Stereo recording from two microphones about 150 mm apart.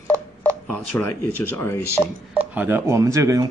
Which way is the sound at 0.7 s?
10° left (ahead or behind).